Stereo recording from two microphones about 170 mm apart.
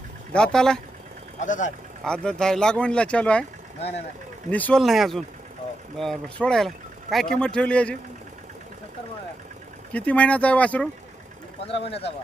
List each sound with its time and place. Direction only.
0.3 s speech: 5° left (ahead or behind)
1.4 s speech: 45° left (ahead or behind)
2.0 s speech: 5° left (ahead or behind)
4.4 s speech: 10° left (ahead or behind)
9.9 s speech: 10° left (ahead or behind)
11.6 s speech: 35° left (ahead or behind)